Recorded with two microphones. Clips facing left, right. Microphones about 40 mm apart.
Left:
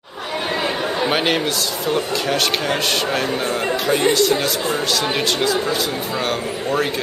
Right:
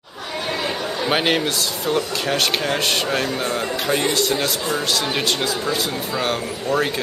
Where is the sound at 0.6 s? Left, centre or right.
Left.